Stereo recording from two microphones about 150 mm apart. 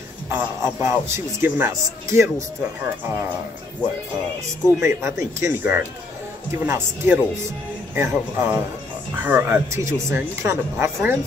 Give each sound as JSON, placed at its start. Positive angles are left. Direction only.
{"t": 0.3, "sound": "a man's voice", "side_deg": -15}
{"t": 4.7, "sound": "a man's voice", "side_deg": -20}